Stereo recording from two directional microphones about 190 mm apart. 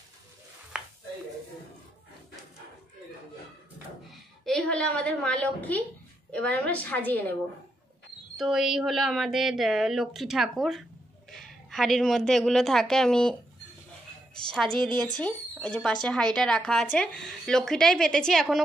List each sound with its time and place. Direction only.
0.7 s a sound: 5° right (ahead or behind)
4.5 s a woman's voice: 5° left (ahead or behind)
8.4 s speech: centre (ahead or behind)
14.5 s speech: centre (ahead or behind)
14.9 s speech: 20° right (ahead or behind)
15.1 s speech: 5° left (ahead or behind)